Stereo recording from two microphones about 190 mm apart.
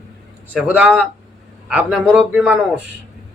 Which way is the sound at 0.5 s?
Centre (ahead or behind).